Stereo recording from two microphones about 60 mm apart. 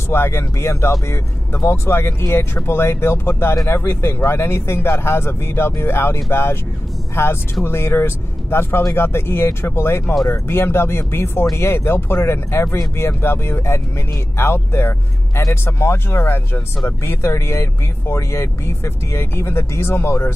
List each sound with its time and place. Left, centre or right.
0.1 s speech: left